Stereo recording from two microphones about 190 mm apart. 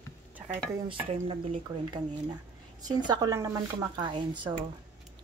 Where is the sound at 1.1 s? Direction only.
30° right (ahead or behind).